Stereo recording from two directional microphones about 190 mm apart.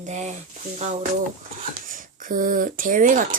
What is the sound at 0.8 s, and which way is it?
Speech, 35° right (ahead or behind).